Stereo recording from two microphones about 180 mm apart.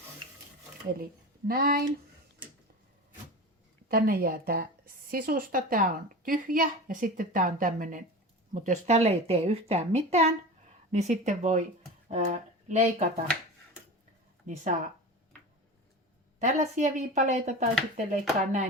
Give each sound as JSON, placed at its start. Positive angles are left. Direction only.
{"t": 1.5, "sound": "speech", "side_deg": -55}
{"t": 3.8, "sound": "a woman's voice", "side_deg": -55}
{"t": 14.4, "sound": "a woman's voice", "side_deg": -45}
{"t": 16.4, "sound": "a woman's voice", "side_deg": -40}